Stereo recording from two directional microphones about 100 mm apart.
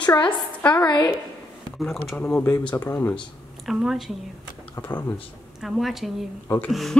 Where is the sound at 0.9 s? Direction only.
50° left (ahead or behind).